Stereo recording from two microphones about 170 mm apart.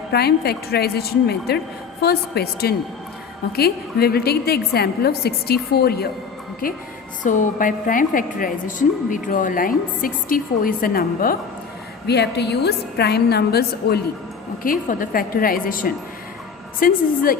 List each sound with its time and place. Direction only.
0.1 s a woman's voice: 70° left (ahead or behind)
7.2 s a woman's voice: 50° left (ahead or behind)
12.0 s a woman's voice: 80° left
14.6 s a woman's voice: 55° left (ahead or behind)